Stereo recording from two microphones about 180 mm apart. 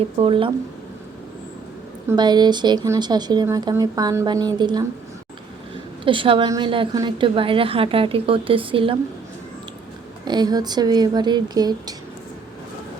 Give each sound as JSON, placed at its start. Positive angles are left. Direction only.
{"t": 0.2, "sound": "speech", "side_deg": -30}
{"t": 2.1, "sound": "speech", "side_deg": -25}
{"t": 6.1, "sound": "speech", "side_deg": -30}
{"t": 10.2, "sound": "speech", "side_deg": -25}